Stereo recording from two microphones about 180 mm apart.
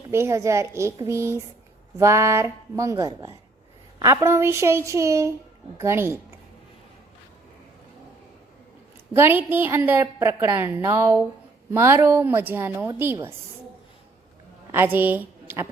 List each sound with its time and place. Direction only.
0.1 s a woman's voice: 15° right (ahead or behind)
9.1 s a woman's voice: 10° right (ahead or behind)
14.7 s a woman's voice: 10° right (ahead or behind)